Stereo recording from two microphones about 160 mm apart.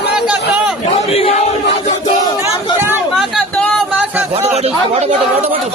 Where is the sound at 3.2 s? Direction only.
5° left (ahead or behind).